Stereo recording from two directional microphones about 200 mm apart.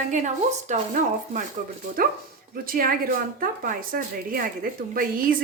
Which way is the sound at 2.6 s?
45° right (ahead or behind).